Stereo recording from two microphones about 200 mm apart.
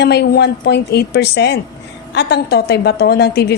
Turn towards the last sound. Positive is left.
turn(degrees=55)  # may be behind; listen again after turning